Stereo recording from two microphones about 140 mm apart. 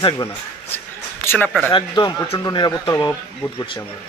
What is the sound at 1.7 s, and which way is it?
A man's voice, 30° left (ahead or behind).